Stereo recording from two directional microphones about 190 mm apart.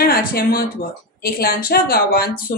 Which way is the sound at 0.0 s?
50° left (ahead or behind).